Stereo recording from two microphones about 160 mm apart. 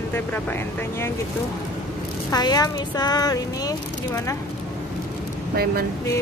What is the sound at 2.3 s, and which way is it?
Speech, 25° left (ahead or behind).